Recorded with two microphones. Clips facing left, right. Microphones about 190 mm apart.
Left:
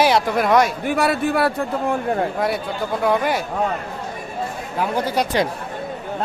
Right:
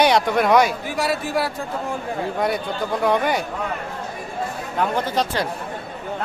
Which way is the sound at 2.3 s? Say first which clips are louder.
Even; centre (ahead or behind).